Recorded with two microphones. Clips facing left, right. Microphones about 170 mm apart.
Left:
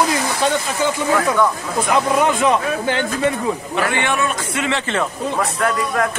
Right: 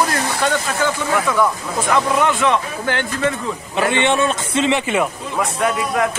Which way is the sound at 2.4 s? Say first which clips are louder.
Left 2 dB; 35° left (ahead or behind).